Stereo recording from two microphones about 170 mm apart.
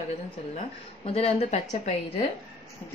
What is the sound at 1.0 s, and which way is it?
Speech, 35° left (ahead or behind).